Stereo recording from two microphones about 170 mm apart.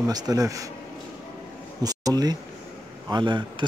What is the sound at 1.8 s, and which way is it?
A man's voice, 20° right (ahead or behind).